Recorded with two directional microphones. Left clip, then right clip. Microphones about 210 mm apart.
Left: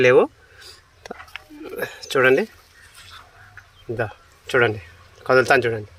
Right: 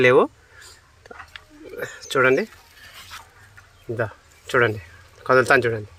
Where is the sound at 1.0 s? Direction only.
20° left (ahead or behind).